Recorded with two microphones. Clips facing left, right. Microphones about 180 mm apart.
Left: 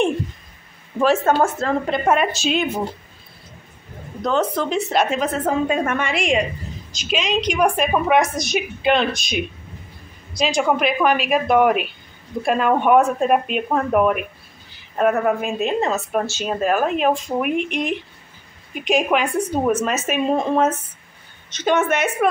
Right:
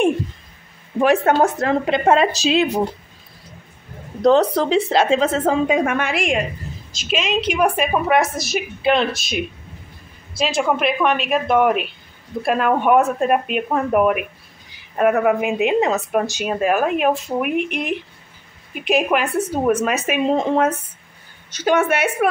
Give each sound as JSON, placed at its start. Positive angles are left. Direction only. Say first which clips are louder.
{"t": 0.9, "sound": "a woman's voice", "louder": "right 1 dB", "side_deg": -15}
{"t": 4.2, "sound": "a woman's voice", "louder": "right 6 dB", "side_deg": -35}
{"t": 5.8, "sound": "a woman's voice", "louder": "right 2 dB", "side_deg": -10}